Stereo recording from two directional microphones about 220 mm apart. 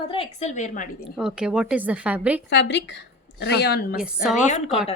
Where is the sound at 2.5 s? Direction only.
50° left (ahead or behind).